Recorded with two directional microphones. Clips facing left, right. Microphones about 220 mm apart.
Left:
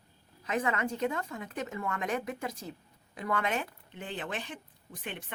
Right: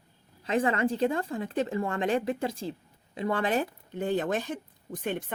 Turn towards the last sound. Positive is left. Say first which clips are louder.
# right 10 dB
turn(degrees=-45)  # may be behind; listen again after turning